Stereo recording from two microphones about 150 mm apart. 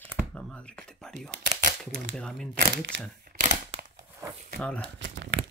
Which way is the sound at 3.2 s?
65° right (ahead or behind).